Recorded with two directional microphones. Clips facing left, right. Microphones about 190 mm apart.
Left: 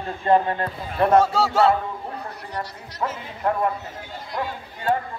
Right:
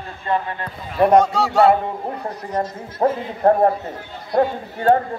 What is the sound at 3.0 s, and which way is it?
A man's voice, 40° right (ahead or behind).